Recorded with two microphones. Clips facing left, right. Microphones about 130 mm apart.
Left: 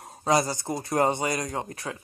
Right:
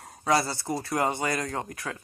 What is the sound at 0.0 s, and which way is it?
Speech, 20° left (ahead or behind).